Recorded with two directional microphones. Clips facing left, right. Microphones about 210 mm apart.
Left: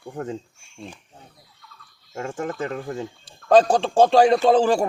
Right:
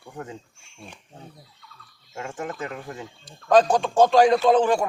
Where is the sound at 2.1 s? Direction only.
35° left (ahead or behind).